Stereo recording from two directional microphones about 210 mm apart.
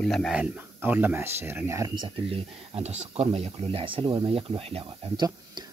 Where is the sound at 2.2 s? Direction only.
25° right (ahead or behind).